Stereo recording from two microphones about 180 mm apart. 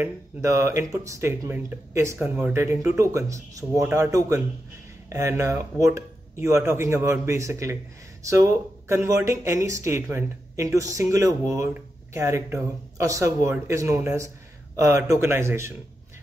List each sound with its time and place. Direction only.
0.0 s speech: 15° right (ahead or behind)